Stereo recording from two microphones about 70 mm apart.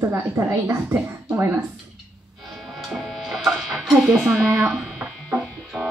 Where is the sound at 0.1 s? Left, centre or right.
Right.